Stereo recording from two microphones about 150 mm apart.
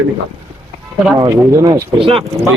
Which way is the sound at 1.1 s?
20° right (ahead or behind).